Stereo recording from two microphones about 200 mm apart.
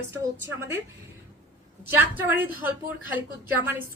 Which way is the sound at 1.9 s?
10° right (ahead or behind).